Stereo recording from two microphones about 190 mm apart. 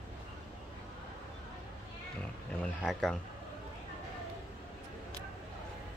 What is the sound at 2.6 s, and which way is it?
Speech, 5° left (ahead or behind).